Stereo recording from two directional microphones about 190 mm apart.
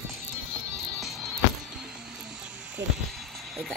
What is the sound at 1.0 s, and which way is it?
Music, centre (ahead or behind).